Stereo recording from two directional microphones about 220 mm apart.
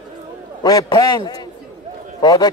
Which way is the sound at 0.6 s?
15° left (ahead or behind).